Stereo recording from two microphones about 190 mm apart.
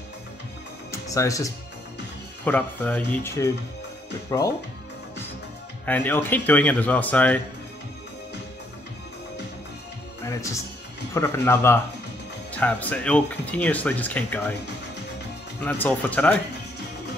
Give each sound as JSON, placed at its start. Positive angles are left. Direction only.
{"t": 0.9, "sound": "speech", "side_deg": 15}
{"t": 5.9, "sound": "speech", "side_deg": 10}
{"t": 10.2, "sound": "speech", "side_deg": 15}
{"t": 15.6, "sound": "speech", "side_deg": 10}